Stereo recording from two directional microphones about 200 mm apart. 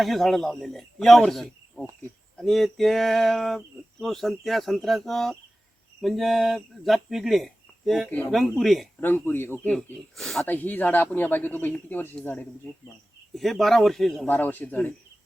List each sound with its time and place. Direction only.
0.0 s speech: centre (ahead or behind)
9.0 s speech: 10° left (ahead or behind)